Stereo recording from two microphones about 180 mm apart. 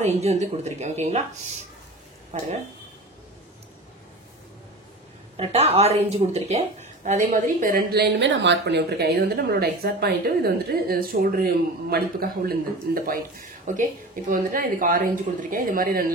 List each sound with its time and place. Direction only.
0.0 s speech: 35° right (ahead or behind)
2.3 s speech: 40° right (ahead or behind)
5.4 s a woman's voice: 35° right (ahead or behind); by 16.1 s 55° right (ahead or behind)